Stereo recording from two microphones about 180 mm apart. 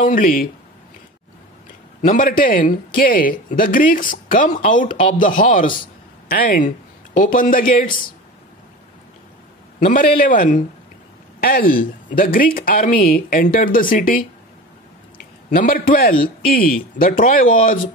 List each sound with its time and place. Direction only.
0.0 s a man's voice: 50° left (ahead or behind)
2.0 s a man's voice: 50° left (ahead or behind)
9.8 s a man's voice: 45° left (ahead or behind)